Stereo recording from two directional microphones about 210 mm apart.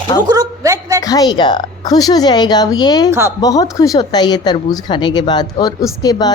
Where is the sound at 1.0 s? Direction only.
20° left (ahead or behind).